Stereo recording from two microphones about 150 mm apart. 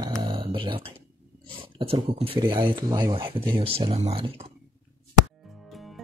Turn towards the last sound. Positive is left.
turn(degrees=0)  # may be behind; listen again after turning